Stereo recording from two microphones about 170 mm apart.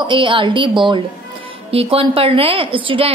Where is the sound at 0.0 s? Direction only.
30° right (ahead or behind).